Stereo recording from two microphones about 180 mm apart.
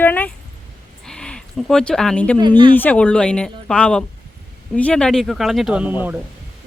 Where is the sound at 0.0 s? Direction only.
10° left (ahead or behind).